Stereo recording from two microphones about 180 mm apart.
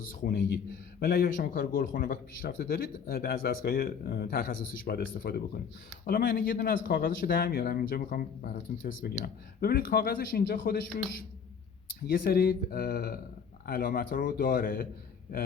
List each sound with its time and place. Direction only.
0.2 s speech: 55° left (ahead or behind)
12.0 s a man's voice: 55° left (ahead or behind)